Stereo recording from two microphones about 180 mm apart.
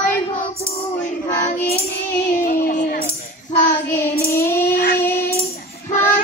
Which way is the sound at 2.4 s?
50° left (ahead or behind).